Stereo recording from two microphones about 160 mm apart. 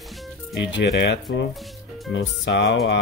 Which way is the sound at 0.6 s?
90° left.